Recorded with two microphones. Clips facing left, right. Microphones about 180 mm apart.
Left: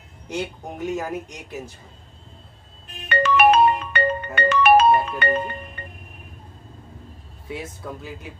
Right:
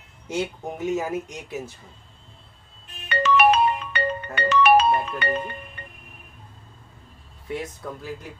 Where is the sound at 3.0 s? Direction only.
50° left (ahead or behind).